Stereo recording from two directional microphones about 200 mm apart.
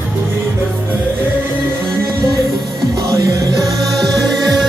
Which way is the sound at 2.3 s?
15° right (ahead or behind).